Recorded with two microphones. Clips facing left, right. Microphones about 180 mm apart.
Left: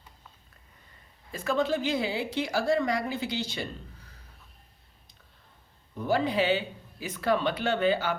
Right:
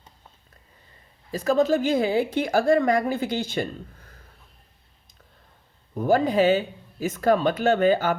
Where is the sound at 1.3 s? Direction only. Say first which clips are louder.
Right 7 dB; 40° right (ahead or behind).